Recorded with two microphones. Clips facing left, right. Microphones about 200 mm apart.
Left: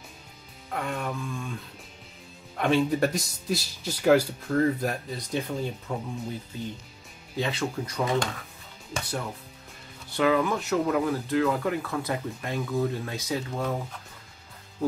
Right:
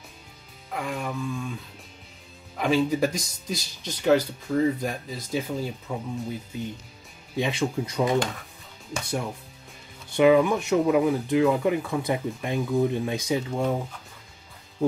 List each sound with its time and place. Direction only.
0.7 s speech: centre (ahead or behind)
7.3 s speech: 15° right (ahead or behind)